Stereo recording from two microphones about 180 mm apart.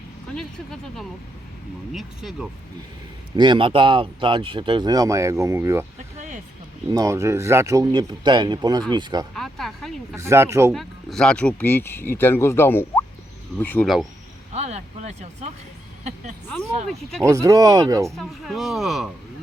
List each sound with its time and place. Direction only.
0.3 s speech: centre (ahead or behind)
3.3 s speech: 25° right (ahead or behind)
6.1 s a sound: 45° right (ahead or behind)
6.9 s speech: 20° right (ahead or behind)
9.3 s speech: centre (ahead or behind)
10.2 s speech: 15° right (ahead or behind)
10.7 s speech: centre (ahead or behind)
14.5 s speech: 35° right (ahead or behind)
17.2 s speech: 15° right (ahead or behind)
18.1 s speech: centre (ahead or behind)